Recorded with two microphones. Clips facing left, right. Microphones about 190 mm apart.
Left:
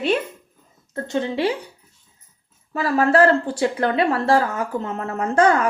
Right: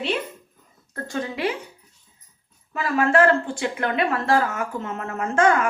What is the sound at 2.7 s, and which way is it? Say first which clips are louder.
Speech: left 3 dB; 35° left (ahead or behind).